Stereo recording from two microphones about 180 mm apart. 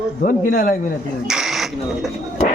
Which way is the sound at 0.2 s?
50° left (ahead or behind).